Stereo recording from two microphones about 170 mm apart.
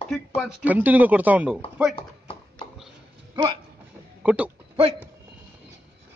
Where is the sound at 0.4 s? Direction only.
10° right (ahead or behind).